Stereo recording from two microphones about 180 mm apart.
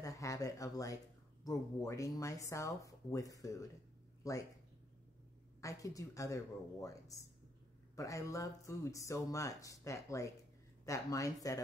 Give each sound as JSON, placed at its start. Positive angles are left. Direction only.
{"t": 0.0, "sound": "speech", "side_deg": 20}
{"t": 5.6, "sound": "speech", "side_deg": 20}